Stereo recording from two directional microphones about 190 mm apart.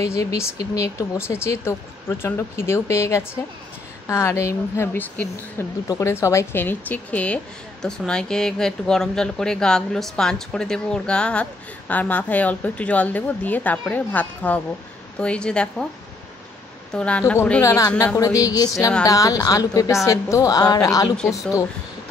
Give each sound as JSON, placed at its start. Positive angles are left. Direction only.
{"t": 0.0, "sound": "speech", "side_deg": 15}
{"t": 16.9, "sound": "a woman's voice", "side_deg": 5}